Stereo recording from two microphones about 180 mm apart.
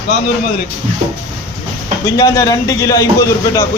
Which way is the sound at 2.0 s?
20° left (ahead or behind).